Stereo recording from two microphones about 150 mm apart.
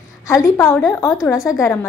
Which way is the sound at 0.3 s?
20° left (ahead or behind).